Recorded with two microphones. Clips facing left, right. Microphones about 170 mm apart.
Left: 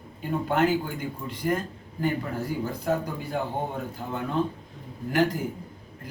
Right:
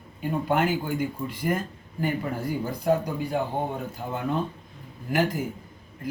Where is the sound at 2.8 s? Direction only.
15° right (ahead or behind).